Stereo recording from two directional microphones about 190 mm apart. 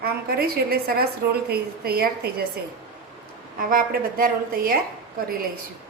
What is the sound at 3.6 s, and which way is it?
A woman's voice, 50° right (ahead or behind).